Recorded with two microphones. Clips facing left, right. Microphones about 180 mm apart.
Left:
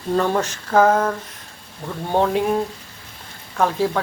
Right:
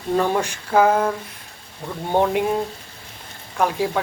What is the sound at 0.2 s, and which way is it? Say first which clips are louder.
Speech: left 1 dB; 10° right (ahead or behind).